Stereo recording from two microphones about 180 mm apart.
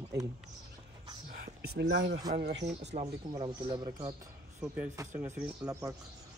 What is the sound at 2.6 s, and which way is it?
Speech, 40° right (ahead or behind).